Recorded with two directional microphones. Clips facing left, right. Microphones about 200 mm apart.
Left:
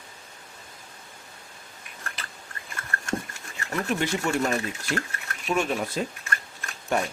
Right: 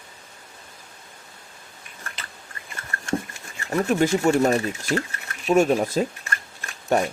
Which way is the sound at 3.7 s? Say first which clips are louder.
Right 7 dB; 40° right (ahead or behind).